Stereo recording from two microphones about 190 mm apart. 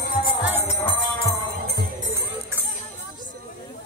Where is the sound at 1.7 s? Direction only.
50° right (ahead or behind).